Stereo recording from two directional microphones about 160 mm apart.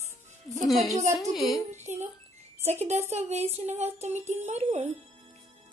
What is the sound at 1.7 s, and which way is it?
Speech, 45° right (ahead or behind).